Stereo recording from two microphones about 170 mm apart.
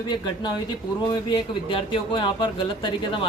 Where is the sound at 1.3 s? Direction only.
30° left (ahead or behind).